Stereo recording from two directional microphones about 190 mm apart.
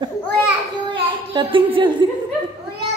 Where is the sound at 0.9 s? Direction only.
25° right (ahead or behind).